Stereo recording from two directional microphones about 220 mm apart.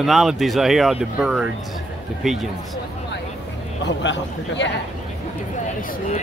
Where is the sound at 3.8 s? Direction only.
55° left (ahead or behind).